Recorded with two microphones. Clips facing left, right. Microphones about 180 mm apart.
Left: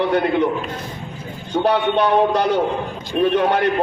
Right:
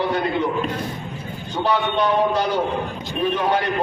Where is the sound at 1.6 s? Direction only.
60° left (ahead or behind).